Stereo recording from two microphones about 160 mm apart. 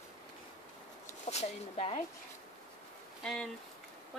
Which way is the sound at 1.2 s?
40° left (ahead or behind).